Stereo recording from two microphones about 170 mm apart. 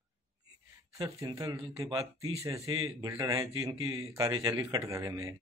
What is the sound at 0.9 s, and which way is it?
Speech, 20° right (ahead or behind).